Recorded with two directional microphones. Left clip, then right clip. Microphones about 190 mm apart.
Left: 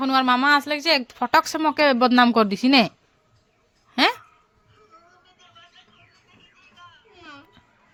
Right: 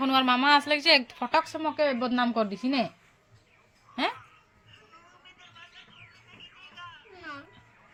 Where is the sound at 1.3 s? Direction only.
50° left (ahead or behind); by 2.9 s 70° left (ahead or behind).